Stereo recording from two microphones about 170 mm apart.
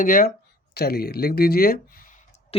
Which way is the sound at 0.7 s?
65° left (ahead or behind).